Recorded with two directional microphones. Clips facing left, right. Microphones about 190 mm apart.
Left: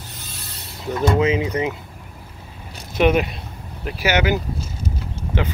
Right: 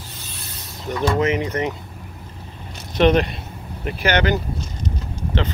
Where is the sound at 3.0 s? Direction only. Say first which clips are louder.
Right 1 dB; 5° left (ahead or behind).